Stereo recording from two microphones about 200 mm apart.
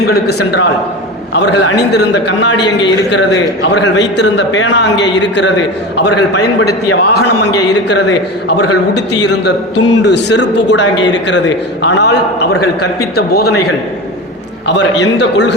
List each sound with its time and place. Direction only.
0.0 s a man's voice: 55° left (ahead or behind)
6.9 s a man's voice: 75° left (ahead or behind); by 13.6 s 55° left (ahead or behind)
14.7 s a man's voice: 60° left (ahead or behind)